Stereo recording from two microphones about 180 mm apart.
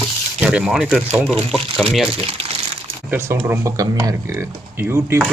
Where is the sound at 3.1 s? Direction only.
15° right (ahead or behind).